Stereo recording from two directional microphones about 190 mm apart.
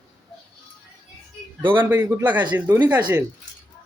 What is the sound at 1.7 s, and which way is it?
Speech, 10° right (ahead or behind).